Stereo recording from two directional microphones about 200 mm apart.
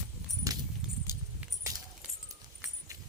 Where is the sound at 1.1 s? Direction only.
15° right (ahead or behind).